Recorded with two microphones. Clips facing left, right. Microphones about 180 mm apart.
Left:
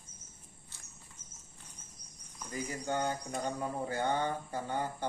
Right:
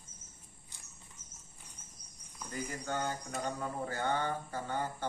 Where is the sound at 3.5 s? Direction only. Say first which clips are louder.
Left 2 dB; 15° left (ahead or behind).